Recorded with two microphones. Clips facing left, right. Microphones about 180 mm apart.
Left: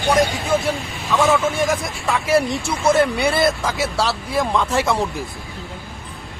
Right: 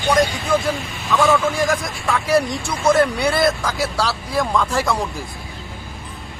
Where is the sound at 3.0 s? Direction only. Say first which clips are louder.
Even; centre (ahead or behind).